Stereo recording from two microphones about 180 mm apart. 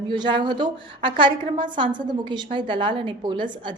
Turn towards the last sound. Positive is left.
turn(degrees=-25)  # may be behind; listen again after turning